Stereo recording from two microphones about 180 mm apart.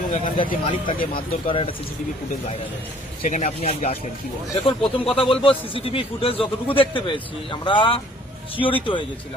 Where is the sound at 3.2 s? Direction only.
40° left (ahead or behind).